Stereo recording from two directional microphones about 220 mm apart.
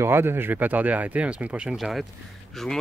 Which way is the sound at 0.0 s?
10° right (ahead or behind).